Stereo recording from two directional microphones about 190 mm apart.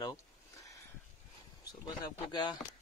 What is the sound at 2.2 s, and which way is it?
Speech, 25° left (ahead or behind).